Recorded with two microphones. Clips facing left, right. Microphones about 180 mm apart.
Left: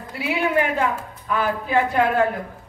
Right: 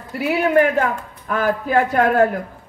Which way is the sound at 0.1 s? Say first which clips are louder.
Right 5 dB; 45° right (ahead or behind).